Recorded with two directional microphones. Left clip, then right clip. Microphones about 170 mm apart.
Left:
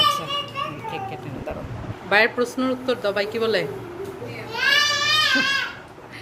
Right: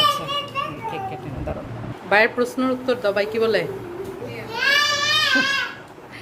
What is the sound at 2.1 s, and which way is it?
Speech, centre (ahead or behind).